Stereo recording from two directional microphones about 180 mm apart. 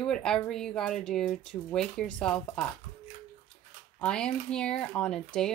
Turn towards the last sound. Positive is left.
turn(degrees=5)  # may be behind; listen again after turning